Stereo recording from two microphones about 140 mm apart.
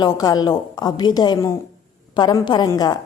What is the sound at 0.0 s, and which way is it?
A woman's voice, 25° left (ahead or behind).